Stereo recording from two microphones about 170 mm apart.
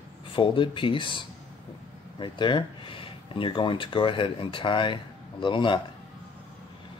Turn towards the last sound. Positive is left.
turn(degrees=30)  # may be behind; listen again after turning